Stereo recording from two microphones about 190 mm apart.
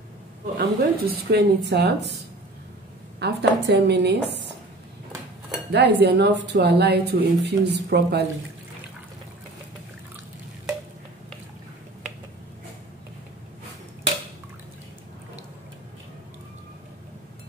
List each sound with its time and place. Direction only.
0.6 s speech: 55° right (ahead or behind)
3.2 s speech: 60° right (ahead or behind)
5.7 s speech: 65° right (ahead or behind)